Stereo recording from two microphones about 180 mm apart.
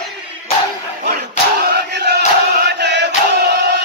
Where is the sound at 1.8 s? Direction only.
70° right (ahead or behind).